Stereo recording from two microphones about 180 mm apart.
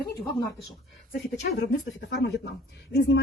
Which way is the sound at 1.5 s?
70° left (ahead or behind).